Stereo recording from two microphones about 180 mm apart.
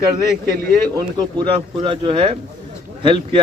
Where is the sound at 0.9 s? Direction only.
25° right (ahead or behind).